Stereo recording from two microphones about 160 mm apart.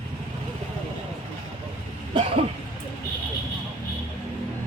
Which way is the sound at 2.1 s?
35° right (ahead or behind).